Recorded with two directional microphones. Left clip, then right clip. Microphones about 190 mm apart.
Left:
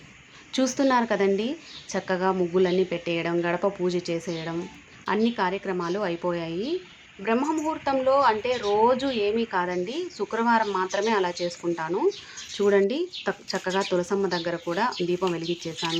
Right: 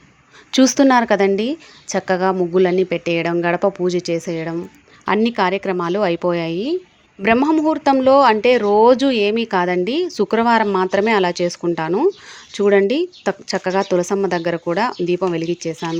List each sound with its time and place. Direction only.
0.5 s speech: 40° right (ahead or behind)